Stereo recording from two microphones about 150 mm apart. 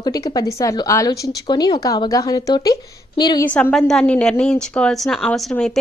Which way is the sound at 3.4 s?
10° left (ahead or behind).